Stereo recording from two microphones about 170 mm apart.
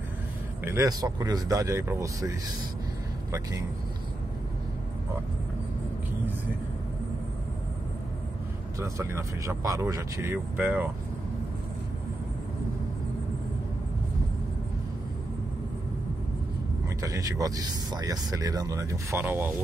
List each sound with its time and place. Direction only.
0.7 s speech: 20° right (ahead or behind)
8.7 s speech: 20° right (ahead or behind)
17.0 s speech: 20° right (ahead or behind)